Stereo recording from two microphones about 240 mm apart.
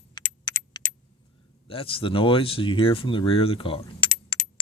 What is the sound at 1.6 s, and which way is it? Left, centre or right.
Speech, left.